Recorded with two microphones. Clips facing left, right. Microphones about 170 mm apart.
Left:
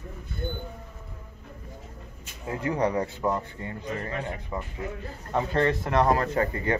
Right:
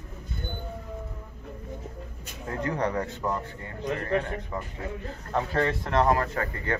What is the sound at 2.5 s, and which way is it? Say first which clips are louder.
A man's voice: left 2 dB; 10° left (ahead or behind).